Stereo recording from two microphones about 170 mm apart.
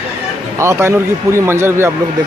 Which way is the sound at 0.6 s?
15° right (ahead or behind).